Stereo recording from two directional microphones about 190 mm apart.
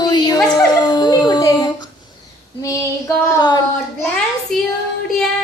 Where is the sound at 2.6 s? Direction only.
15° left (ahead or behind).